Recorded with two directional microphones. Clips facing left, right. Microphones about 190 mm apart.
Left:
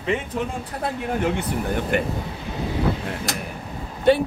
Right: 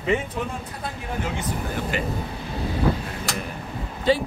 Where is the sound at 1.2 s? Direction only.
60° left (ahead or behind).